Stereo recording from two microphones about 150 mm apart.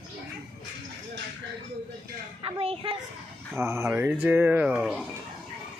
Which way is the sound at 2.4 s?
40° right (ahead or behind).